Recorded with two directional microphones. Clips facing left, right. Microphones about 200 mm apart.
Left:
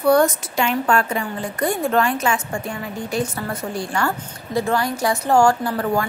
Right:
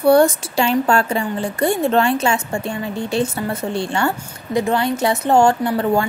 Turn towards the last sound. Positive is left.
turn(degrees=-25)  # may be behind; listen again after turning